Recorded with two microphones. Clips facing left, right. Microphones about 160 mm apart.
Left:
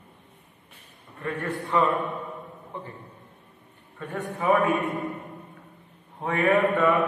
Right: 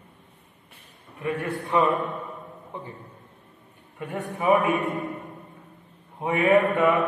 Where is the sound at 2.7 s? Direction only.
15° right (ahead or behind).